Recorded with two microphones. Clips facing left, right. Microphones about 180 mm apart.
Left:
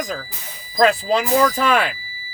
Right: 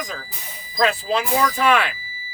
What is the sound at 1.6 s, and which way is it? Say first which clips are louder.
Speech: even; 40° left (ahead or behind).